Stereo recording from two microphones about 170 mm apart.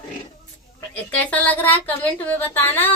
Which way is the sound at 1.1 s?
10° left (ahead or behind).